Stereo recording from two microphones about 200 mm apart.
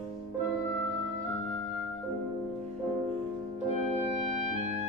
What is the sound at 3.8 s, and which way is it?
Music, 35° right (ahead or behind).